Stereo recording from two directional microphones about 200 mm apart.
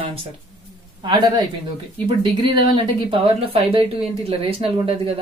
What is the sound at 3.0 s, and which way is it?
Speech, 25° right (ahead or behind).